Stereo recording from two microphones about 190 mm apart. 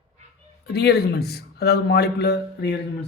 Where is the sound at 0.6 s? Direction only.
60° left (ahead or behind).